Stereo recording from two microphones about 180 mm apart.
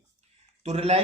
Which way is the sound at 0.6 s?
35° right (ahead or behind).